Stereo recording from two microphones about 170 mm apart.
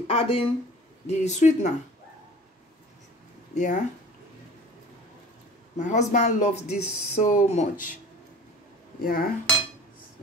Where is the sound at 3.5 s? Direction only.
45° left (ahead or behind).